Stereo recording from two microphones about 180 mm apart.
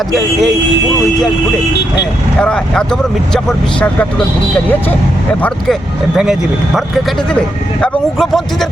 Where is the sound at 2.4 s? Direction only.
5° left (ahead or behind).